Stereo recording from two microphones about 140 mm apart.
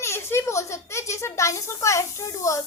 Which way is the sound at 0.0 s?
20° left (ahead or behind).